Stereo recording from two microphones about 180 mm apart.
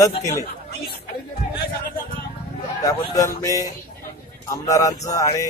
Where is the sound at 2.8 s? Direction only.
20° left (ahead or behind).